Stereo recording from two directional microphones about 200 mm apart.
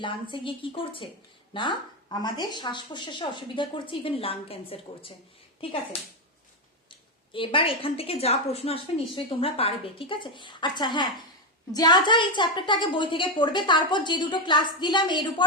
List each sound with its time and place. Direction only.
0.0 s a woman's voice: 25° left (ahead or behind)
7.3 s a woman's voice: 25° left (ahead or behind)